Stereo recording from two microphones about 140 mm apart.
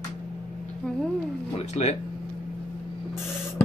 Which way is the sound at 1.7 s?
50° left (ahead or behind).